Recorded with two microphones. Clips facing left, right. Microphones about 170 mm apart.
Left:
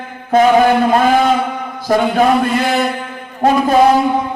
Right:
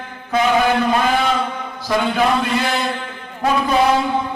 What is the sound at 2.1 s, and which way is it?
A man's voice, 50° left (ahead or behind).